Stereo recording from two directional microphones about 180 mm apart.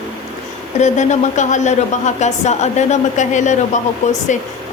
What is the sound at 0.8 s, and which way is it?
A woman's voice, 40° left (ahead or behind).